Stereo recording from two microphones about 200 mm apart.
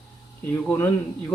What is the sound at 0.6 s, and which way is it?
Speech, 10° left (ahead or behind).